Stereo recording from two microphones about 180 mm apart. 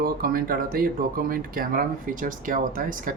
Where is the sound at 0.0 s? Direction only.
55° right (ahead or behind).